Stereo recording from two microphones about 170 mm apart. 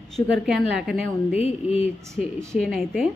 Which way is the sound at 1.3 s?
35° left (ahead or behind).